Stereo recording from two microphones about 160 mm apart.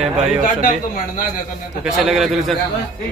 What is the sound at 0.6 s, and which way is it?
Speech, 55° left (ahead or behind).